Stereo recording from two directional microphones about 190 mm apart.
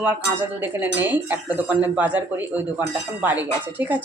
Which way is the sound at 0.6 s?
10° right (ahead or behind).